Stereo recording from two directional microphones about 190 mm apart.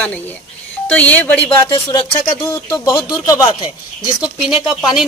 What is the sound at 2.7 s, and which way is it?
Speech, 20° left (ahead or behind).